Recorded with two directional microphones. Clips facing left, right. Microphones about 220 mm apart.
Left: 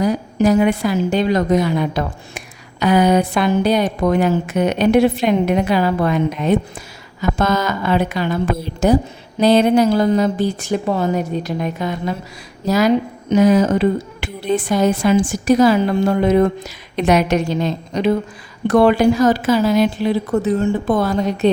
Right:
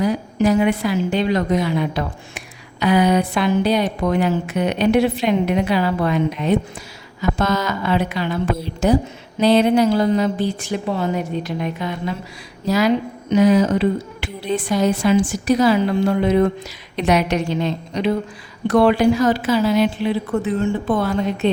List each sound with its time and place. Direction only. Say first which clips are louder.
0.0 s a woman's voice: left 2 dB; 40° left (ahead or behind)